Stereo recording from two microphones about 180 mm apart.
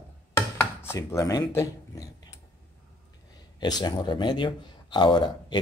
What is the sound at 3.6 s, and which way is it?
Speech, 20° left (ahead or behind).